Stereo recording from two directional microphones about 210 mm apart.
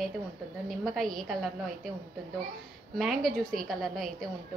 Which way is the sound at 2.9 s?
Centre (ahead or behind).